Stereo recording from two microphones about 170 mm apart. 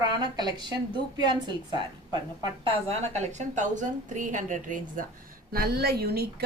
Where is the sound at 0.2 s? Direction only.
25° right (ahead or behind).